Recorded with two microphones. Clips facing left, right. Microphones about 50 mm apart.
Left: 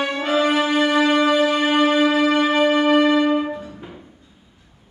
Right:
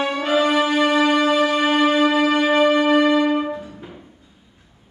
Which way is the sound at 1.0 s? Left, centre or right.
Centre.